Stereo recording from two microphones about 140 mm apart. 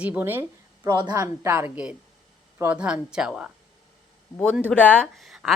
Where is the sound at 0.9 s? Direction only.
30° right (ahead or behind); by 3.5 s 5° right (ahead or behind).